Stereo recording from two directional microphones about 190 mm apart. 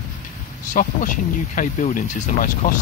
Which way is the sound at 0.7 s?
40° left (ahead or behind).